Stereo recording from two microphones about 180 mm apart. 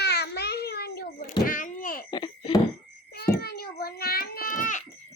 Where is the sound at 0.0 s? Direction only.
65° left (ahead or behind).